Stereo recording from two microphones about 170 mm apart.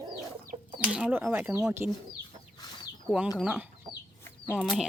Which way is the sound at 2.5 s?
25° left (ahead or behind).